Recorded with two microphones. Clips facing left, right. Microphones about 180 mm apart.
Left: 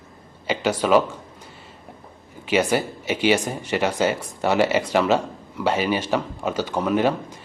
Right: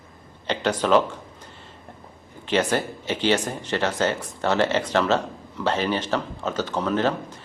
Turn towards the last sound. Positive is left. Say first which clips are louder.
# left 2 dB
turn(degrees=10)  # may be behind; listen again after turning